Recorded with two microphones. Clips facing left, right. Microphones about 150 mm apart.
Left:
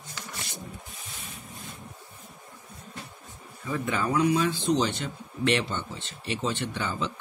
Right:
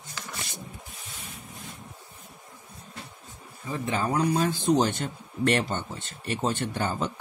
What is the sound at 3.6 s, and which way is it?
Speech, 30° right (ahead or behind).